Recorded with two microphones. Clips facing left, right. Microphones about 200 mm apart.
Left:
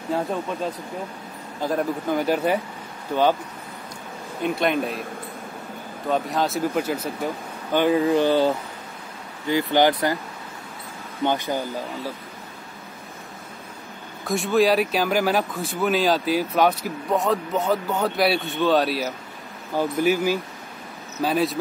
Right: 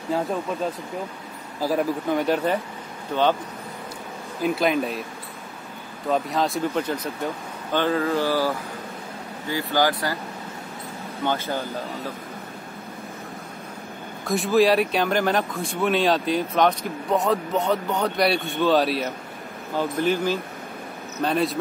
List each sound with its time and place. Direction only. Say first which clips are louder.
0.1 s speech: even; centre (ahead or behind)
1.6 s speech: right 1 dB; 5° right (ahead or behind)
4.4 s speech: right 1 dB; centre (ahead or behind)
6.0 s speech: even; centre (ahead or behind)
7.7 s mantra: left 4 dB; 15° left (ahead or behind)
9.5 s speech: left 4 dB; 20° left (ahead or behind)
11.2 s mantra: left 2 dB; 15° left (ahead or behind)
14.2 s speech: right 1 dB; centre (ahead or behind)
19.8 s mantra: left 2 dB; 10° left (ahead or behind)
21.2 s speech: left 1 dB; centre (ahead or behind)